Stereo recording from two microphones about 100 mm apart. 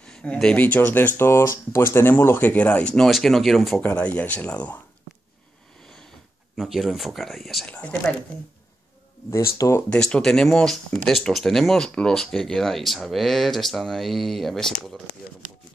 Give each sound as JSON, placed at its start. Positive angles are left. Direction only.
{"t": 0.0, "sound": "speech", "side_deg": 10}
{"t": 3.8, "sound": "speech", "side_deg": 15}
{"t": 6.5, "sound": "speech", "side_deg": -5}
{"t": 7.6, "sound": "speech", "side_deg": 10}
{"t": 9.3, "sound": "speech", "side_deg": 30}
{"t": 9.8, "sound": "speech", "side_deg": 10}